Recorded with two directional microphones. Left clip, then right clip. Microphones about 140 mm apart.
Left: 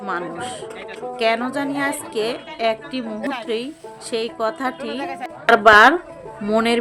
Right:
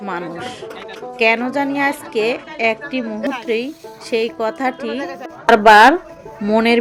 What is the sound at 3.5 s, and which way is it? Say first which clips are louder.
A woman's voice: right 5 dB; 15° right (ahead or behind).